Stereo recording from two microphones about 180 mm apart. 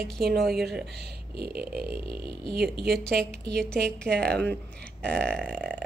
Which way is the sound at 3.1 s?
65° right (ahead or behind).